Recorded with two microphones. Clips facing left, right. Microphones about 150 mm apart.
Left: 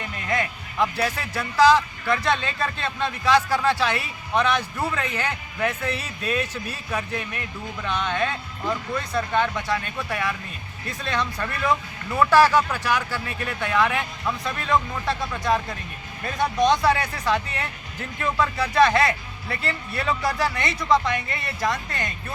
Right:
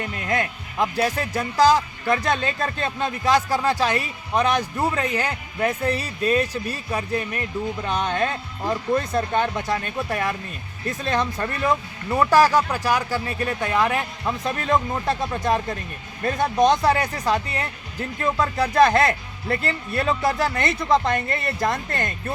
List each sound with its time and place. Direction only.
0.0 s speech: 45° right (ahead or behind)